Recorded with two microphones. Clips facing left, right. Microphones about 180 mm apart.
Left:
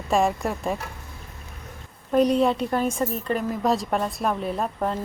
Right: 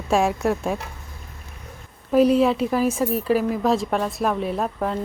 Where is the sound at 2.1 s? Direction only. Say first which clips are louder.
Right 3 dB; 5° right (ahead or behind).